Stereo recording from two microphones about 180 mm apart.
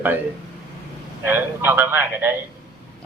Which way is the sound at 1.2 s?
10° right (ahead or behind).